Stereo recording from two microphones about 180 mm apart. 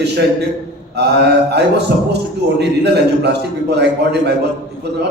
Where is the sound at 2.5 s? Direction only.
70° right (ahead or behind).